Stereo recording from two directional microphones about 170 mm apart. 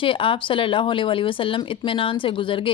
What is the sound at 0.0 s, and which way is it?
Speech, 30° left (ahead or behind).